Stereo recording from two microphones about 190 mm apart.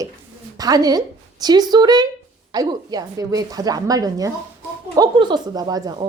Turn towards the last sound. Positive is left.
turn(degrees=-20)  # may be behind; listen again after turning